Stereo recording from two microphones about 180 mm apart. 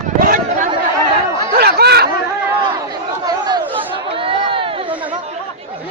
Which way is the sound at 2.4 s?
20° right (ahead or behind).